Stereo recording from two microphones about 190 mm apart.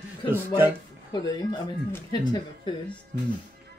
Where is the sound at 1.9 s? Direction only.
20° left (ahead or behind).